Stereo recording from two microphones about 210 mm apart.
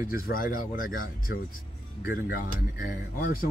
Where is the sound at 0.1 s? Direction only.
40° left (ahead or behind).